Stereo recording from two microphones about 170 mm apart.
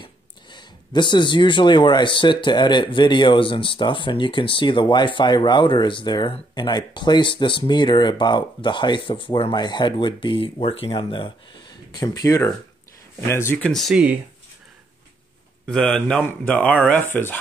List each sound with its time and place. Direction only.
0.0 s speech: 25° left (ahead or behind)
13.7 s speech: centre (ahead or behind)
15.6 s speech: 5° left (ahead or behind)